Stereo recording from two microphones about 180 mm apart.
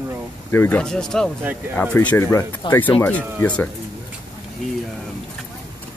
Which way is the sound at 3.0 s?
10° left (ahead or behind).